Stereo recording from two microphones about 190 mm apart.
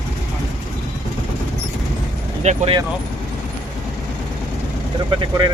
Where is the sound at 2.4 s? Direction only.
40° right (ahead or behind).